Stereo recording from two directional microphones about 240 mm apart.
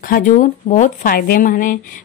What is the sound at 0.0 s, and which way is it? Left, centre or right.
A woman's voice, left.